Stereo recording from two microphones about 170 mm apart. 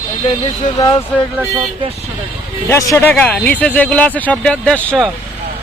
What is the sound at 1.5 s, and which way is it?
Speech, 30° right (ahead or behind).